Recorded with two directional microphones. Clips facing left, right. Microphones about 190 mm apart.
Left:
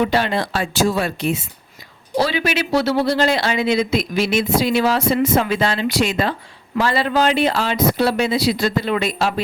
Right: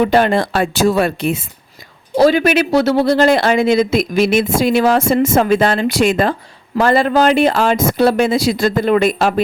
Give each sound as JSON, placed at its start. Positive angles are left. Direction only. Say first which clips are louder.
{"t": 0.0, "sound": "speech", "louder": "right 6 dB", "side_deg": -50}